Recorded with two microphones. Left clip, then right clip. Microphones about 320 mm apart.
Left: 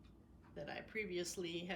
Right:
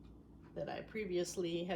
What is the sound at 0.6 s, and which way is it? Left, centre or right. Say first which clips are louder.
A woman's voice: right 3 dB; centre.